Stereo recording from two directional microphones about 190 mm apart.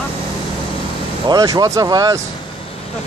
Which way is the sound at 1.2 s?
20° right (ahead or behind).